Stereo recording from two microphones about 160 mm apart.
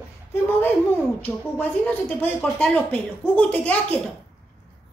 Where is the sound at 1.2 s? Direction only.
10° left (ahead or behind).